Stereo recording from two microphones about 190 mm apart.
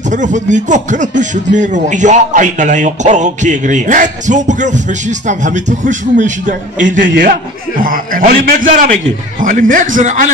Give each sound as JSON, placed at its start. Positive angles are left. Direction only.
{"t": 0.1, "sound": "a man's voice", "side_deg": -40}